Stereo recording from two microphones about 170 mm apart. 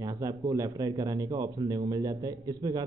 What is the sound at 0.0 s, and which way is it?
Speech, 20° right (ahead or behind).